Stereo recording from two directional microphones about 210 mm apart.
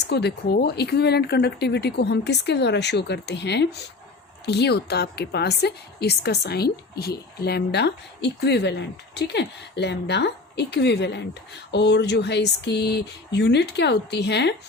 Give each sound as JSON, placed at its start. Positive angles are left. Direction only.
{"t": 0.1, "sound": "a woman's voice", "side_deg": 55}